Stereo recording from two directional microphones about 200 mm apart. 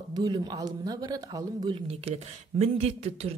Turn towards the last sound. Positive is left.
turn(degrees=-30)  # may be behind; listen again after turning